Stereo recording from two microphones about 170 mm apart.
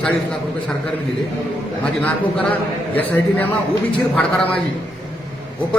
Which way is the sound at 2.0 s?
10° left (ahead or behind).